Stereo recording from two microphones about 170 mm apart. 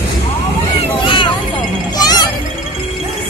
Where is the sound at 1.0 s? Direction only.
30° left (ahead or behind).